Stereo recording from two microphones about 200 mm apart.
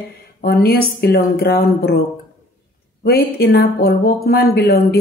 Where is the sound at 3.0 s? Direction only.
55° left (ahead or behind).